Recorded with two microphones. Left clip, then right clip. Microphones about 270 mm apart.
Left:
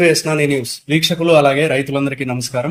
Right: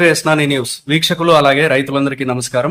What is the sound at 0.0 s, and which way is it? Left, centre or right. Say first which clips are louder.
A man's voice: right 2 dB; centre.